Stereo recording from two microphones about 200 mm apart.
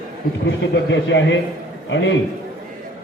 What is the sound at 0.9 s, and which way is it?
A man's voice, 65° left (ahead or behind).